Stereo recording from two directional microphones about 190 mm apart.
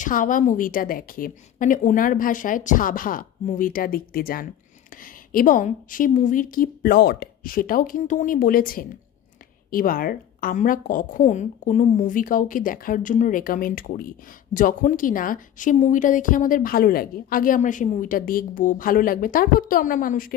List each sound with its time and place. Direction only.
0.0 s a woman's voice: 45° left (ahead or behind)